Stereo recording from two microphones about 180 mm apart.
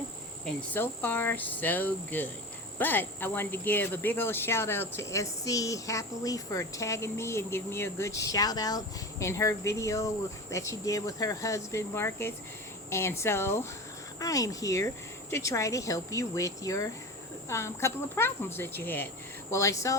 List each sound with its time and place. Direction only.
0.4 s speech: 10° left (ahead or behind)